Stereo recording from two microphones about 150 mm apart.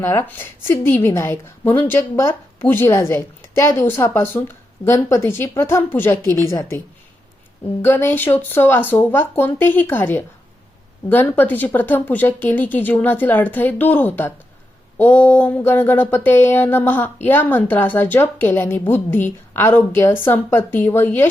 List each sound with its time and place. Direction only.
0.0 s a woman's voice: 15° left (ahead or behind)